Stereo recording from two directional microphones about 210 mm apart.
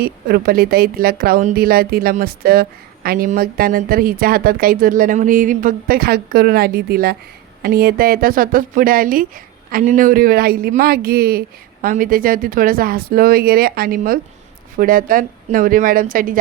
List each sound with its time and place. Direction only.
0.0 s a woman's voice: 45° right (ahead or behind)